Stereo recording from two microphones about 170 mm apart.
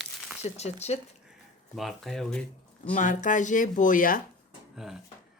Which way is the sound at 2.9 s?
50° left (ahead or behind).